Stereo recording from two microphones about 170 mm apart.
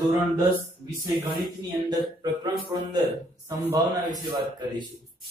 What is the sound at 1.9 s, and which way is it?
Speech, 25° right (ahead or behind).